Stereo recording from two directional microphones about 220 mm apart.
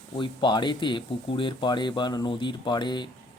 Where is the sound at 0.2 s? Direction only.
20° left (ahead or behind).